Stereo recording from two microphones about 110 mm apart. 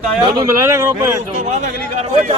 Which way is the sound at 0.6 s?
25° right (ahead or behind).